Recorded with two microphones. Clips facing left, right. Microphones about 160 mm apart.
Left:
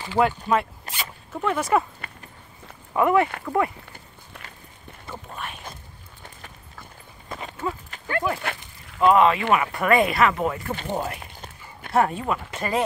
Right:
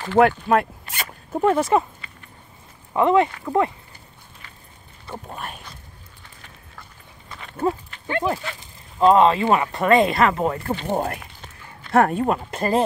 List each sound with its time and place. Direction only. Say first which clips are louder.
0.0 s speech: right 5 dB; 55° right (ahead or behind)
1.3 s speech: right 4 dB; 35° right (ahead or behind)
3.0 s speech: right 2 dB; 25° right (ahead or behind)
5.3 s speech: right 1 dB; 45° right (ahead or behind)
7.2 s clip-clop: left 6 dB; 40° left (ahead or behind)
8.1 s speech: right 2 dB; 25° right (ahead or behind)
10.9 s speech: right 4 dB; 50° right (ahead or behind)